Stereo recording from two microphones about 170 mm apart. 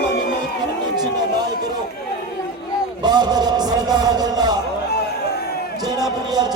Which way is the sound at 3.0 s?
25° right (ahead or behind).